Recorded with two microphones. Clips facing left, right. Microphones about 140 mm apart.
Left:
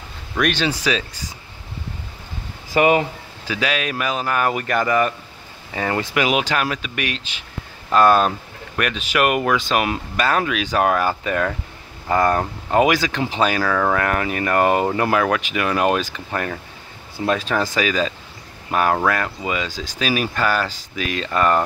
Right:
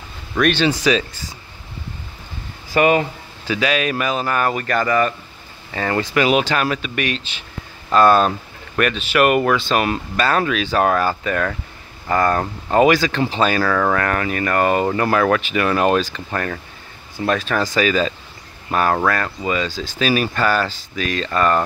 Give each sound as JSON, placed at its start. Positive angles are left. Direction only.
{"t": 0.4, "sound": "speech", "side_deg": 5}
{"t": 2.7, "sound": "speech", "side_deg": 20}
{"t": 3.4, "sound": "speech", "side_deg": 5}
{"t": 17.2, "sound": "speech", "side_deg": 20}
{"t": 17.6, "sound": "speech", "side_deg": 5}